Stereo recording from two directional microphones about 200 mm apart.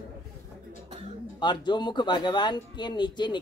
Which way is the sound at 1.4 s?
20° left (ahead or behind).